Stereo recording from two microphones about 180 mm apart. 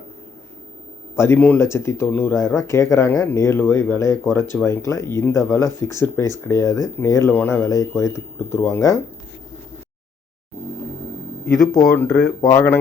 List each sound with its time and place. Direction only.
1.1 s speech: 15° left (ahead or behind)
11.7 s speech: 20° left (ahead or behind)